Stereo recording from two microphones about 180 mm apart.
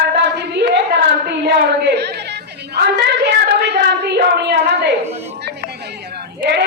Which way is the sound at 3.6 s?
65° right (ahead or behind).